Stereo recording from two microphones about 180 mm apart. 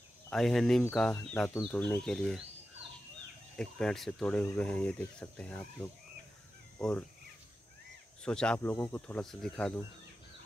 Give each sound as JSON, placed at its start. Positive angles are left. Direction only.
{"t": 0.3, "sound": "speech", "side_deg": 0}
{"t": 3.5, "sound": "speech", "side_deg": 5}
{"t": 8.2, "sound": "speech", "side_deg": 5}